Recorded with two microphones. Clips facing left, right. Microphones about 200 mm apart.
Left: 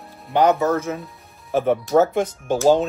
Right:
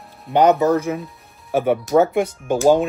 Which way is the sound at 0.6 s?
15° right (ahead or behind).